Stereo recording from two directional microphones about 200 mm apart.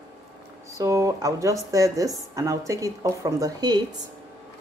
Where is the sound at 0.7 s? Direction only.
15° right (ahead or behind).